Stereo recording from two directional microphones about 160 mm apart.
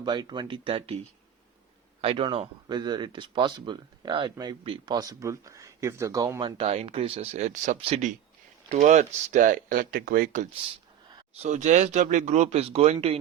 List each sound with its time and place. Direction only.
0.0 s speech: 25° right (ahead or behind)
2.0 s speech: 35° right (ahead or behind); by 7.8 s 50° right (ahead or behind)
7.8 s speech: 35° right (ahead or behind); by 10.5 s 60° right (ahead or behind)
11.3 s speech: 50° right (ahead or behind)